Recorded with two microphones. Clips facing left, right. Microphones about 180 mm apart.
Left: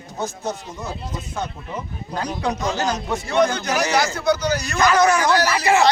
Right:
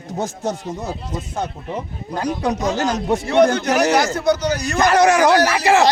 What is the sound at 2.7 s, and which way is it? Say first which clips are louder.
Speech: right 4 dB; 50° right (ahead or behind).